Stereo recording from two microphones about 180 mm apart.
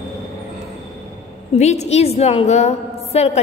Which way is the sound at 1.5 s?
40° left (ahead or behind).